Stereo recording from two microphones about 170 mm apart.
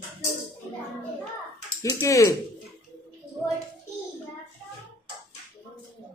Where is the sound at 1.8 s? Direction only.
20° left (ahead or behind).